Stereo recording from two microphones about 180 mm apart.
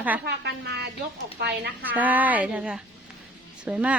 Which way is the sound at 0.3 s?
65° right (ahead or behind).